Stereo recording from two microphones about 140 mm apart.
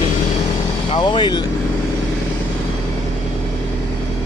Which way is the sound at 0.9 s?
35° left (ahead or behind).